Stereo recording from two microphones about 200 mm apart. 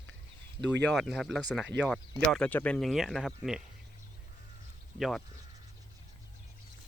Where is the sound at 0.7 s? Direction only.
10° left (ahead or behind).